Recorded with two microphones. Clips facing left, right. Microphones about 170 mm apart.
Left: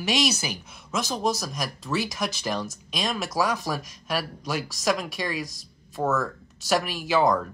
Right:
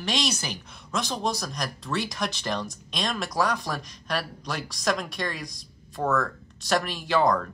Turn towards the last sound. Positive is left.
turn(degrees=5)  # may be behind; listen again after turning